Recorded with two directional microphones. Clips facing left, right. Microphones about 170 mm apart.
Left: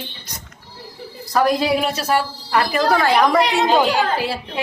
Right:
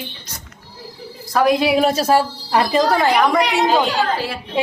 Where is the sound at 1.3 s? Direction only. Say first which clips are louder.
Right 2 dB; centre (ahead or behind).